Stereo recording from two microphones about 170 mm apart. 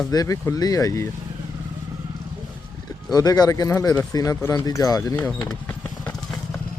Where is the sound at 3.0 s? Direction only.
20° left (ahead or behind).